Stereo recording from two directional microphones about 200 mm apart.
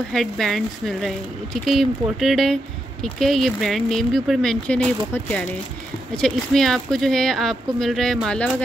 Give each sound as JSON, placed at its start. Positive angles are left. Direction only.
{"t": 0.1, "sound": "speech", "side_deg": 0}